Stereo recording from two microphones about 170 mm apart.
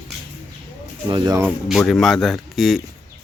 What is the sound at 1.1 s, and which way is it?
Speech, 20° right (ahead or behind).